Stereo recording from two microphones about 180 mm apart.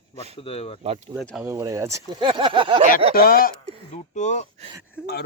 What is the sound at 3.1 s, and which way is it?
Speech, 55° left (ahead or behind).